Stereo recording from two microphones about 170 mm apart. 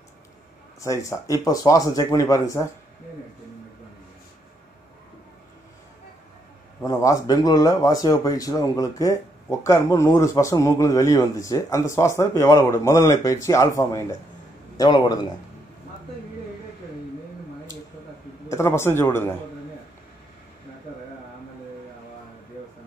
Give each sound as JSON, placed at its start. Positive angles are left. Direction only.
{"t": 0.7, "sound": "speech", "side_deg": 20}
{"t": 6.8, "sound": "speech", "side_deg": 20}
{"t": 18.5, "sound": "speech", "side_deg": 15}